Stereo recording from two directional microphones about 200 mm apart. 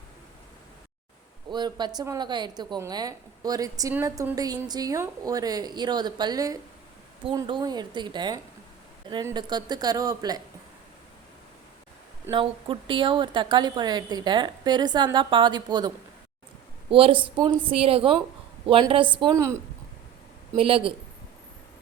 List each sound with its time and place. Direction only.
1.5 s a woman's voice: 20° right (ahead or behind)
12.3 s a woman's voice: 25° right (ahead or behind)
16.9 s a woman's voice: 25° right (ahead or behind)
20.6 s a woman's voice: 25° right (ahead or behind)